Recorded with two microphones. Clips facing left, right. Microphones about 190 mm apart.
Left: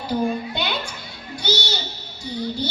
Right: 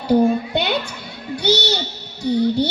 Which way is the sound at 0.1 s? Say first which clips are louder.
Right 8 dB; 60° right (ahead or behind).